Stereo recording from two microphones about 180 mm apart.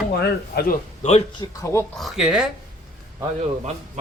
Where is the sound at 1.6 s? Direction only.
15° left (ahead or behind).